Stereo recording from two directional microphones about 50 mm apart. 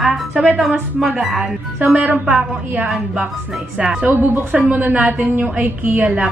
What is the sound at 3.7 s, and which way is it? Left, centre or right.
Speech, centre.